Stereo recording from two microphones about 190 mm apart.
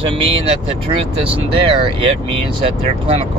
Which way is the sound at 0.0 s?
30° right (ahead or behind).